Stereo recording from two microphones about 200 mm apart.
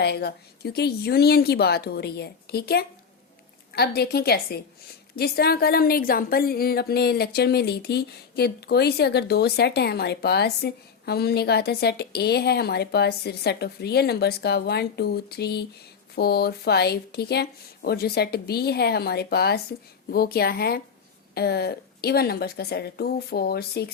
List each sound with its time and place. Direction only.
0.0 s a woman's voice: 55° left (ahead or behind)